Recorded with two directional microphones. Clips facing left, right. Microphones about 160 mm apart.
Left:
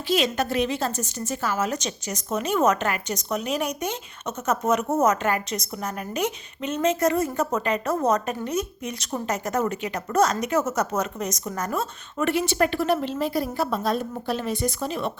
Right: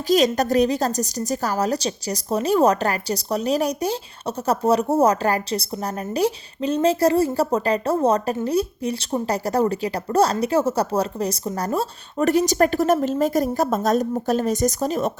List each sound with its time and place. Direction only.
0.3 s a woman's voice: 40° right (ahead or behind)